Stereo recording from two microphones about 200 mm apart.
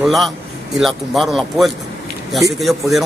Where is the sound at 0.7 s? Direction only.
Centre (ahead or behind).